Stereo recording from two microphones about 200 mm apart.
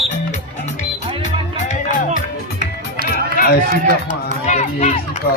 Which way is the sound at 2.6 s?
45° right (ahead or behind).